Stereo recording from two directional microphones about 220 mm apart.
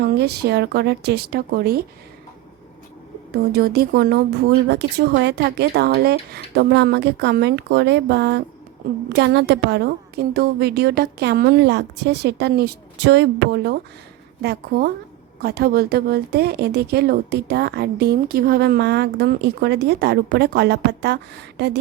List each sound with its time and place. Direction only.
0.0 s a woman's voice: 45° right (ahead or behind)
3.5 s a woman's voice: 45° right (ahead or behind)